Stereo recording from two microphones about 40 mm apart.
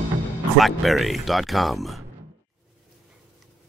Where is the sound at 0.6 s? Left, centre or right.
Centre.